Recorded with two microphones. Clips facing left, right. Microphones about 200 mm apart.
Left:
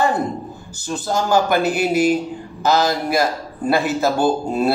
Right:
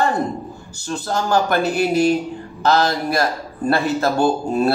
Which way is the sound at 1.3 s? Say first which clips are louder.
Left 1 dB; 5° left (ahead or behind).